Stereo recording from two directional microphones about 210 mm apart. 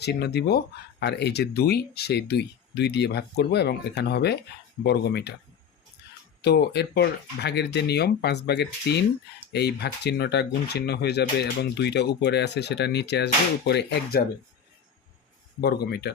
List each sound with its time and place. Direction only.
0.0 s speech: 50° left (ahead or behind)
6.0 s a sound: 50° left (ahead or behind)
6.4 s speech: 50° left (ahead or behind)
15.6 s speech: 50° left (ahead or behind)